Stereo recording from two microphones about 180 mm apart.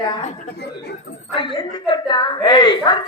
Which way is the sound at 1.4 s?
25° left (ahead or behind).